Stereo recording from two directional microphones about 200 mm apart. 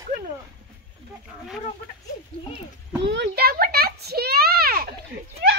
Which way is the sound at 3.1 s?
55° right (ahead or behind).